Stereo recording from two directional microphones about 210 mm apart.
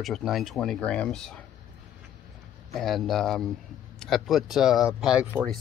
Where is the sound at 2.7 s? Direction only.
Centre (ahead or behind).